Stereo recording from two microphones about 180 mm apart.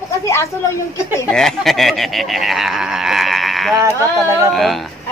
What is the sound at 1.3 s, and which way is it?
Goat, centre (ahead or behind).